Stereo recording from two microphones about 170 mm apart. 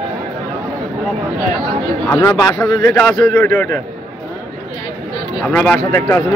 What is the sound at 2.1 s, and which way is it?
A man's voice, 20° left (ahead or behind).